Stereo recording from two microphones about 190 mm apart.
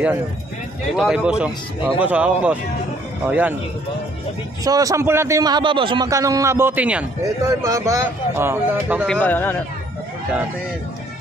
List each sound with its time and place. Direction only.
0.9 s a man's voice: 5° right (ahead or behind)
4.6 s a man's voice: 20° right (ahead or behind)
7.4 s a man's voice: 15° right (ahead or behind)
9.0 s speech: 5° left (ahead or behind)